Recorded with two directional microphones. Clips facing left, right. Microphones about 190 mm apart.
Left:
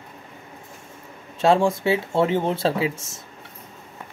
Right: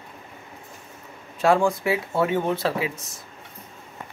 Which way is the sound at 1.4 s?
25° left (ahead or behind).